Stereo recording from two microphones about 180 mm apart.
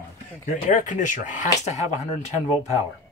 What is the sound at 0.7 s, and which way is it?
Speech, 45° left (ahead or behind).